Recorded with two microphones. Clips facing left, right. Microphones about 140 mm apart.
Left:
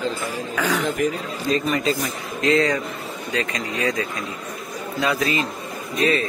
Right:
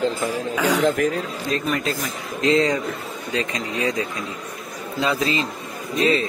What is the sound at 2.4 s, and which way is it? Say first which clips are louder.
Speech: right 1 dB; 25° right (ahead or behind).